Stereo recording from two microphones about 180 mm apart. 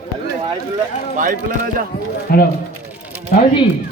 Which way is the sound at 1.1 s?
45° right (ahead or behind).